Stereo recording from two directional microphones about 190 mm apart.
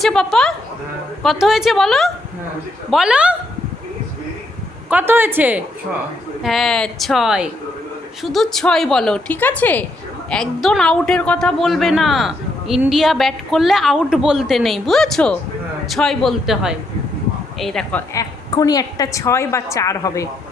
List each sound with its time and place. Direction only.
0.0 s a woman's voice: centre (ahead or behind)
4.9 s a woman's voice: 10° right (ahead or behind)
18.1 s a woman's voice: 20° left (ahead or behind)